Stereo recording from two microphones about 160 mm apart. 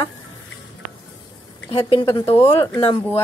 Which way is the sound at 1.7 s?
35° left (ahead or behind).